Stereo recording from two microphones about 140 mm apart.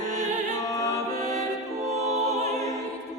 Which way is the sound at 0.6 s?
25° left (ahead or behind).